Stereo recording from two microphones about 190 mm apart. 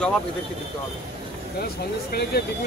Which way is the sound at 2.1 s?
55° left (ahead or behind).